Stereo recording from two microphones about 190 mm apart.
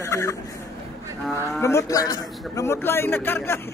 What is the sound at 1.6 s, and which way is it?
A man's voice, 15° left (ahead or behind).